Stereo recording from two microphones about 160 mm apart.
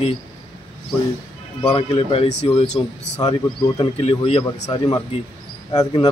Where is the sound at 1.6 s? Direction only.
35° left (ahead or behind).